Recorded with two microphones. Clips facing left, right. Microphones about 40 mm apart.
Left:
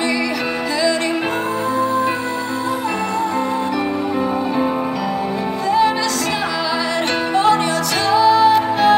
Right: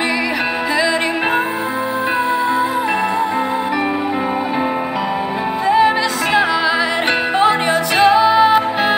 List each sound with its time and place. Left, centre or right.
5.7 s music: right
8.0 s music: right